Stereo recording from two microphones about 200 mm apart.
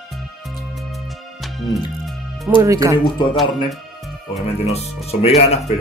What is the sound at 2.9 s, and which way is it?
Speech, 25° left (ahead or behind).